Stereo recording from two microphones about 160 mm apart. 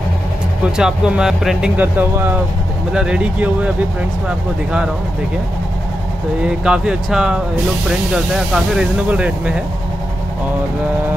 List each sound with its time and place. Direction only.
0.7 s speech: 5° right (ahead or behind)
6.4 s speech: 5° right (ahead or behind)